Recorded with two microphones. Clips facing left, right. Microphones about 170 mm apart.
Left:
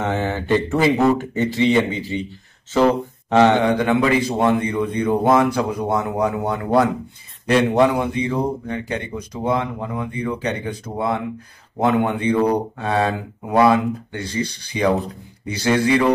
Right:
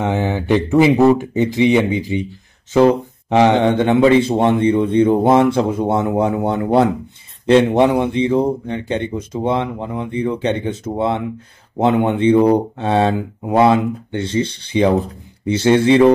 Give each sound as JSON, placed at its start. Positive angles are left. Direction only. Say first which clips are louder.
{"t": 0.0, "sound": "speech", "louder": "right 3 dB", "side_deg": -15}
{"t": 3.6, "sound": "speech", "louder": "right 5 dB", "side_deg": -25}